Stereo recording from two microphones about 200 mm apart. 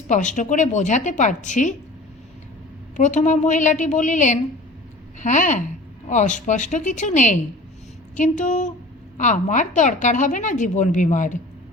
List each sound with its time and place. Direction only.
0.1 s a woman's voice: 40° left (ahead or behind)
2.9 s a woman's voice: 40° left (ahead or behind)